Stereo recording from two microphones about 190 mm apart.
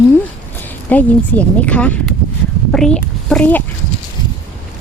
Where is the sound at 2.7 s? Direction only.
5° left (ahead or behind).